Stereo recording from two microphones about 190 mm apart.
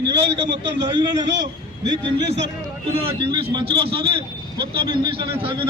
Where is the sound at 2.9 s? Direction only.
30° right (ahead or behind).